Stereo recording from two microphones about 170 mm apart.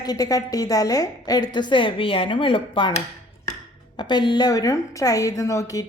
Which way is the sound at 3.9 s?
25° left (ahead or behind).